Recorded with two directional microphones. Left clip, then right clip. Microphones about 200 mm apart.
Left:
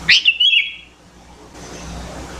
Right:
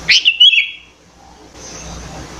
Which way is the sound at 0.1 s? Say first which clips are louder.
Right 4 dB; centre (ahead or behind).